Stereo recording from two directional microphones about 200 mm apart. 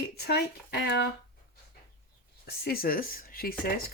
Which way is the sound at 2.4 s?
50° left (ahead or behind).